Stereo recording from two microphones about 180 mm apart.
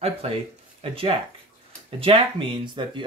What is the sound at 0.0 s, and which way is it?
Speech, 35° right (ahead or behind).